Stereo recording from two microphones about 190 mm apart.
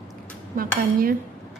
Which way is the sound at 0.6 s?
50° right (ahead or behind).